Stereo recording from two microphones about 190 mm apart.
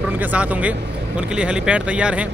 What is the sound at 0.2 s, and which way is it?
Speech, 10° right (ahead or behind).